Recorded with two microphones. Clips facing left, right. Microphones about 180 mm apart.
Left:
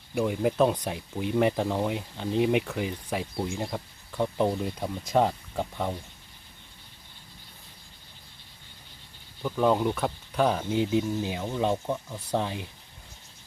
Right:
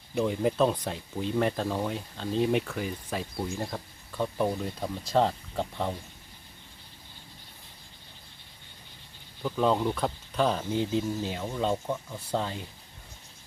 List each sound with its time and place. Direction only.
0.1 s speech: 10° left (ahead or behind)
9.4 s speech: 5° left (ahead or behind)